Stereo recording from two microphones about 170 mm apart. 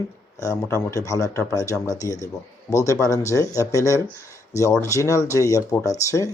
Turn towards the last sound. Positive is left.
turn(degrees=20)  # may be behind; listen again after turning